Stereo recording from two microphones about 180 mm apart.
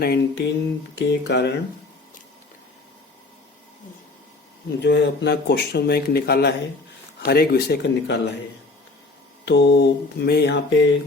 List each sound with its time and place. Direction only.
0.0 s speech: 65° left (ahead or behind)
4.8 s speech: 75° left (ahead or behind)
9.5 s speech: 70° left (ahead or behind)